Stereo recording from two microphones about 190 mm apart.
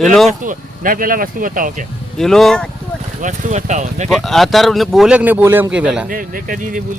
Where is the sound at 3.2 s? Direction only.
40° right (ahead or behind).